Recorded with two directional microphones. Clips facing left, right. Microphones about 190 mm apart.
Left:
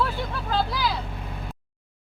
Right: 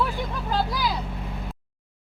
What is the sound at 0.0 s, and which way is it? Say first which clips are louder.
Vehicle: even; 15° right (ahead or behind).